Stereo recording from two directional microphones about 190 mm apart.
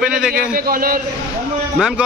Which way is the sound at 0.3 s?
50° right (ahead or behind).